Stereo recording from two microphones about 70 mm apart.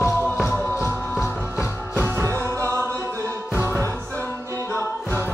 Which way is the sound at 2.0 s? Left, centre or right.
Right.